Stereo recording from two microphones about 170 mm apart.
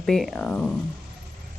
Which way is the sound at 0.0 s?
Centre (ahead or behind).